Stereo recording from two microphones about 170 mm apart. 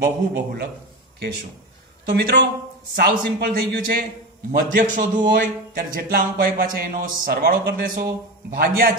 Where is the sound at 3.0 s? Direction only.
65° right (ahead or behind).